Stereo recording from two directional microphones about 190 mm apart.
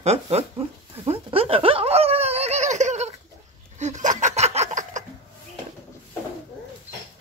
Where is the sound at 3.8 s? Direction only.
40° right (ahead or behind).